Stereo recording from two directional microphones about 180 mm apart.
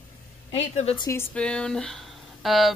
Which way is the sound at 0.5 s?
35° left (ahead or behind).